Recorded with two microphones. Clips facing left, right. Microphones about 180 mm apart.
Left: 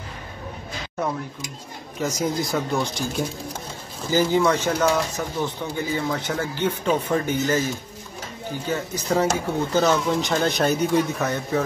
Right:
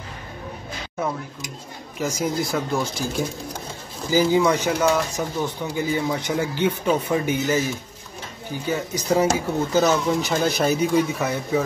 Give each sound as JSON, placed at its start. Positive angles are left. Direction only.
{"t": 2.0, "sound": "speech", "side_deg": 0}
{"t": 4.7, "sound": "speech", "side_deg": 0}
{"t": 5.1, "sound": "speech", "side_deg": -15}